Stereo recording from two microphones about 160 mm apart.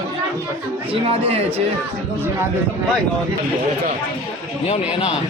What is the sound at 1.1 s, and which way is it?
Speech, 40° right (ahead or behind).